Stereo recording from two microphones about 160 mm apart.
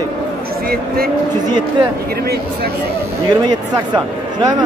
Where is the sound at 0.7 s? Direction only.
70° right (ahead or behind).